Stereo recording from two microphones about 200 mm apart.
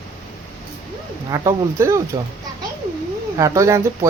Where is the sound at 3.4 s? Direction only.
15° right (ahead or behind).